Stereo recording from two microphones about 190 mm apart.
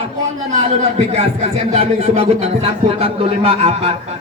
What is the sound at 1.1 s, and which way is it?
Speech, 35° right (ahead or behind).